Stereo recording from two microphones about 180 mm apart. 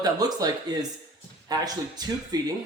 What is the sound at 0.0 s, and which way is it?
Speech, 20° right (ahead or behind).